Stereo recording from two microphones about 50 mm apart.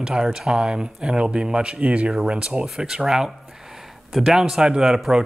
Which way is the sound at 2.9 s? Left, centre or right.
Centre.